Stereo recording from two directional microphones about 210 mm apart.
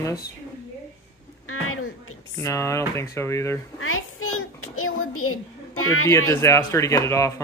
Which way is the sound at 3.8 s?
85° left.